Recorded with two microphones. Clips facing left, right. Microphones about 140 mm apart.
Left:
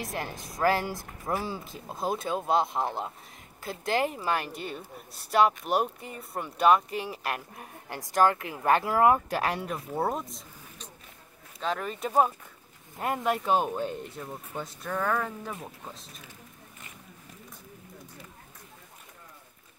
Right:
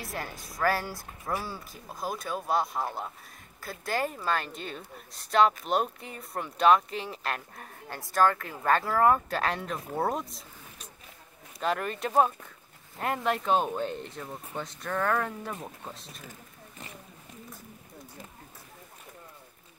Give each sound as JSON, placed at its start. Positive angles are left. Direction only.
{"t": 0.0, "sound": "speech", "side_deg": 20}